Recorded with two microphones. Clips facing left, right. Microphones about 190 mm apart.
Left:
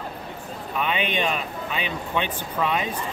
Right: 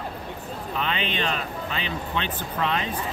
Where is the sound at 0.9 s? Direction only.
15° left (ahead or behind).